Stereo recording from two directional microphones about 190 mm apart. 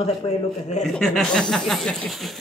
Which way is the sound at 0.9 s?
5° left (ahead or behind).